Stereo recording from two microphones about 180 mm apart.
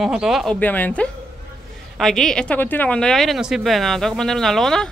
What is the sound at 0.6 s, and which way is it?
A woman's voice, 10° left (ahead or behind).